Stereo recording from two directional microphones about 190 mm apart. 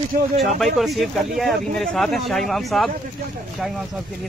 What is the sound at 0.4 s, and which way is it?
Speech, centre (ahead or behind).